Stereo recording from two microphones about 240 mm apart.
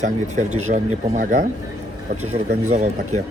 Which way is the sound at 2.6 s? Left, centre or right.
Right.